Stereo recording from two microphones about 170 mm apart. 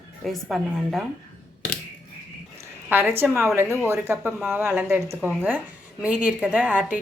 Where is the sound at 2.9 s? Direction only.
15° right (ahead or behind).